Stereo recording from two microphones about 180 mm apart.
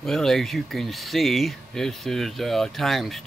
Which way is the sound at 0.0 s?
Centre (ahead or behind).